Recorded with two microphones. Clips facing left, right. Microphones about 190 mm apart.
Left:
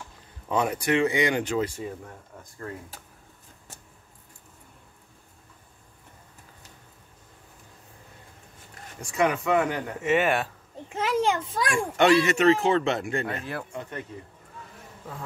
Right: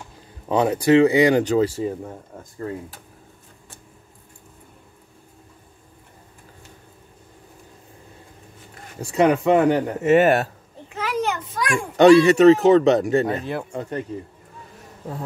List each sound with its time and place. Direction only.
0.5 s speech: 30° right (ahead or behind)
9.0 s speech: 30° right (ahead or behind)
11.0 s a sound: 25° left (ahead or behind)
12.0 s speech: 35° right (ahead or behind)